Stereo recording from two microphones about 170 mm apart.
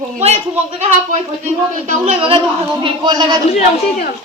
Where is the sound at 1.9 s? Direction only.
35° right (ahead or behind).